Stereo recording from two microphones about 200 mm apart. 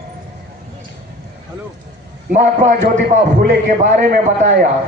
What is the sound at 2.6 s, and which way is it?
Speech, 45° right (ahead or behind).